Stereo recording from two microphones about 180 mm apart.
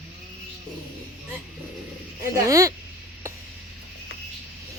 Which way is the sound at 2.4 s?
20° right (ahead or behind).